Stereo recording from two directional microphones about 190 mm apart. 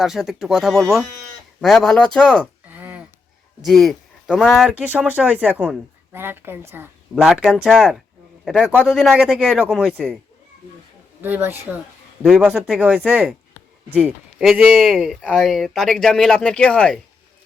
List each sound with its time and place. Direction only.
0.0 s speech: centre (ahead or behind)
2.6 s a sound: 10° right (ahead or behind)
3.6 s speech: centre (ahead or behind)
11.2 s speech: 10° right (ahead or behind); by 17.0 s 5° left (ahead or behind)